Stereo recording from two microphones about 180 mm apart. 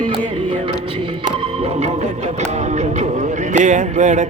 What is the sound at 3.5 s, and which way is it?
Speech, 40° right (ahead or behind).